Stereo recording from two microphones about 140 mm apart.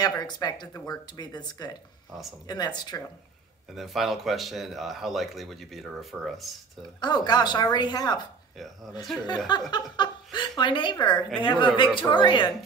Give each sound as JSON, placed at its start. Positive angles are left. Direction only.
{"t": 0.0, "sound": "speech", "side_deg": 30}
{"t": 3.7, "sound": "speech", "side_deg": 0}
{"t": 7.0, "sound": "a man's voice", "side_deg": 30}
{"t": 9.7, "sound": "a man's voice", "side_deg": 30}